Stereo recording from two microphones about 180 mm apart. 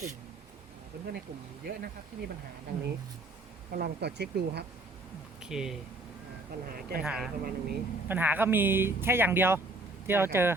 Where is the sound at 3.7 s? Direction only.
65° right (ahead or behind).